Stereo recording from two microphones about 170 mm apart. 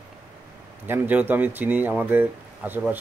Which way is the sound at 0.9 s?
10° right (ahead or behind).